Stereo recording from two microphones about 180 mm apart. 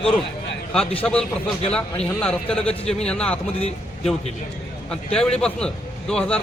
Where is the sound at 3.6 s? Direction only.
35° left (ahead or behind).